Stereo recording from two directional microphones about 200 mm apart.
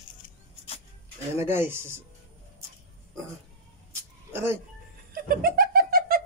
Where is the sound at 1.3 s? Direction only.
10° right (ahead or behind).